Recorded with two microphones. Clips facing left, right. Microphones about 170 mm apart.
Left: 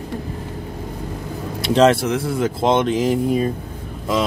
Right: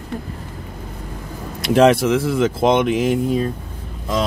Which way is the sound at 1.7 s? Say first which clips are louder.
Right 2 dB; 15° right (ahead or behind).